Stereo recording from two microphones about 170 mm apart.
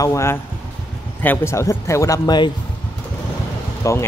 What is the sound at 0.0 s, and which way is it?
Speech, 15° left (ahead or behind).